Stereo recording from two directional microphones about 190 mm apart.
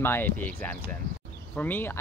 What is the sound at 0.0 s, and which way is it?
Speech, 10° left (ahead or behind).